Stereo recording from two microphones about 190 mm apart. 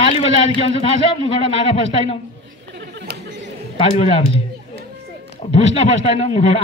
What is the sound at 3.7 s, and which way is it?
Speech, 30° left (ahead or behind).